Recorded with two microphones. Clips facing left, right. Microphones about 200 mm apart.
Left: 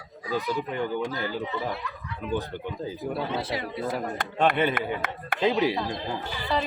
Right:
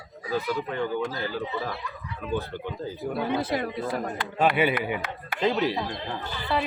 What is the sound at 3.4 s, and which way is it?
Speech, 50° right (ahead or behind).